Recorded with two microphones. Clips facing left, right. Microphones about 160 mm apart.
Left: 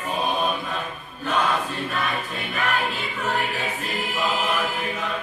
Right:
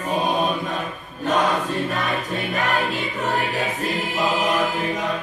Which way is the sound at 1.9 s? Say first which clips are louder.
Right 3 dB; 40° right (ahead or behind).